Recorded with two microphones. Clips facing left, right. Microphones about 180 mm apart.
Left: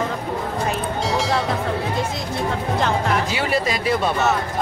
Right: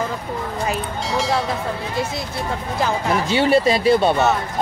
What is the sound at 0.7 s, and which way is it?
Music, centre (ahead or behind).